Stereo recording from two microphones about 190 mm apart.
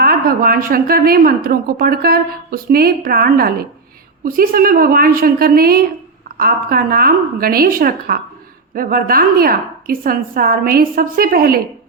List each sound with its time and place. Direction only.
0.0 s a woman's voice: 50° right (ahead or behind)